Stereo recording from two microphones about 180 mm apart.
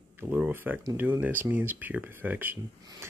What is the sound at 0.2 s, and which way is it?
Speech, 10° right (ahead or behind).